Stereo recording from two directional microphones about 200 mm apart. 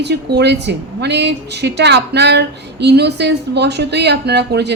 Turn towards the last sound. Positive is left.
turn(degrees=-55)  # may be behind; listen again after turning